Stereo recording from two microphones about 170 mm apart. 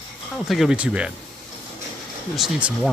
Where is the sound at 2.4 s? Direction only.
5° right (ahead or behind).